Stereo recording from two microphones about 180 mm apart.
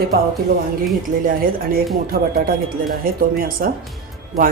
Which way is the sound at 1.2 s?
50° right (ahead or behind).